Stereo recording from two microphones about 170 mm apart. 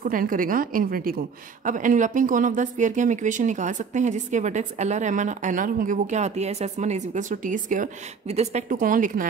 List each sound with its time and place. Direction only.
0.0 s a woman's voice: 55° right (ahead or behind)